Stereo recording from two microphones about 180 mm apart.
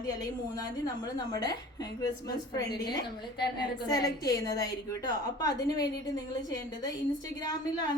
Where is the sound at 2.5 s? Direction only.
20° left (ahead or behind).